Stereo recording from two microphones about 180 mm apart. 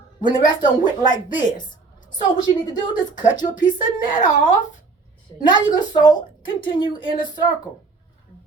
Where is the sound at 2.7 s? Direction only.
25° left (ahead or behind).